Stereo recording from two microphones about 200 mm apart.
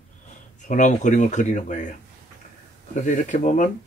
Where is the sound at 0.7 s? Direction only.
40° left (ahead or behind).